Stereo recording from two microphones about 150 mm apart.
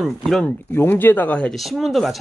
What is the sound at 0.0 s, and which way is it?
Speech, centre (ahead or behind).